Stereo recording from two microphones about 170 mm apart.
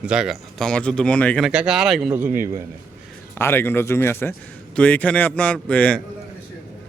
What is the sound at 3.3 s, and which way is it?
Speech, 15° left (ahead or behind).